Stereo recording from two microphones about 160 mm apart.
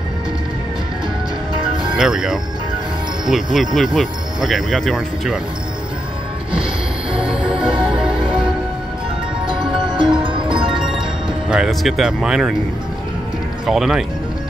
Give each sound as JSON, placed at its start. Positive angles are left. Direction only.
{"t": 2.0, "sound": "speech", "side_deg": -5}
{"t": 3.5, "sound": "speech", "side_deg": 0}
{"t": 7.1, "sound": "music", "side_deg": -5}
{"t": 9.9, "sound": "music", "side_deg": -30}
{"t": 11.5, "sound": "speech", "side_deg": -5}
{"t": 13.7, "sound": "speech", "side_deg": 0}